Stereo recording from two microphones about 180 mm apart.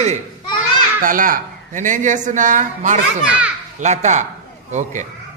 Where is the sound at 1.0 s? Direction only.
50° right (ahead or behind).